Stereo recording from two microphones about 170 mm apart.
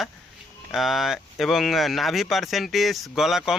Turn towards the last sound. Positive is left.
turn(degrees=0)  # may be behind; listen again after turning